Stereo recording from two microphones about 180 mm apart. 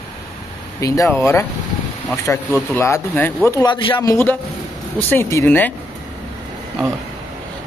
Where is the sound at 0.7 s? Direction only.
15° left (ahead or behind).